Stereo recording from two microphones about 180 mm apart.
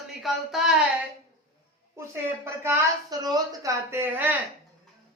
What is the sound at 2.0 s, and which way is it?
A woman's voice, 15° right (ahead or behind).